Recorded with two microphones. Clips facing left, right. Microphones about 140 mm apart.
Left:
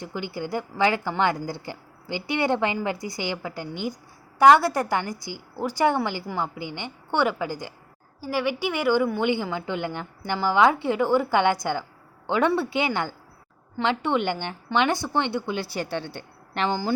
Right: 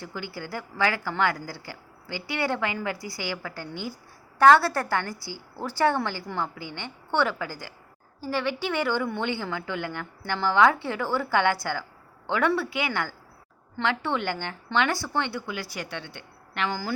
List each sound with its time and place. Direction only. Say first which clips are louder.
0.0 s a woman's voice: left 5 dB; 20° left (ahead or behind)